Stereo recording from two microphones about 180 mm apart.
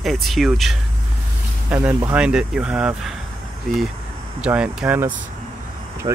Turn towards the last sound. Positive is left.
turn(degrees=-25)  # may be behind; listen again after turning